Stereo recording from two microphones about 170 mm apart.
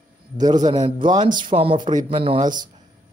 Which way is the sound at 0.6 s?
25° right (ahead or behind).